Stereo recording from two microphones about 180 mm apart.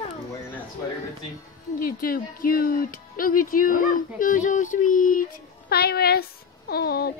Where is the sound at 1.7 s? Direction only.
55° left (ahead or behind).